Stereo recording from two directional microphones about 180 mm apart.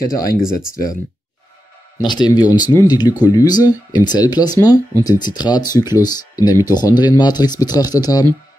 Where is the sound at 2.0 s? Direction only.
25° left (ahead or behind).